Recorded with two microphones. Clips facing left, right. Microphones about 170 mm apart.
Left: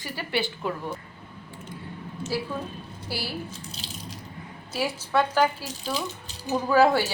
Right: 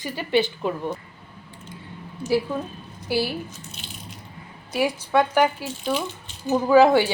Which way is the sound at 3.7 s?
35° left (ahead or behind).